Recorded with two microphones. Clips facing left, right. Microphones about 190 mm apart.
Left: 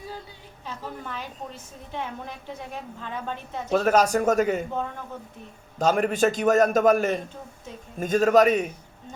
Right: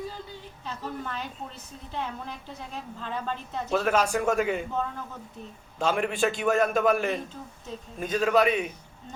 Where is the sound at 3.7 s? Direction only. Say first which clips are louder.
Left 4 dB; 40° left (ahead or behind).